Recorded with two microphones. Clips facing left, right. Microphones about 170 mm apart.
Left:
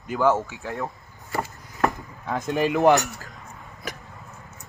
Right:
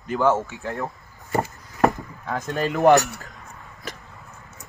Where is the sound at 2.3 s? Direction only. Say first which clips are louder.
Left 2 dB; 20° left (ahead or behind).